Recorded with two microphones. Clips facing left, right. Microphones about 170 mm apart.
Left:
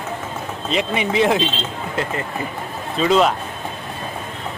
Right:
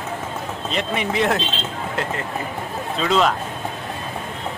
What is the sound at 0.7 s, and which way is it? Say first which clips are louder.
Speech: left 3 dB; centre (ahead or behind).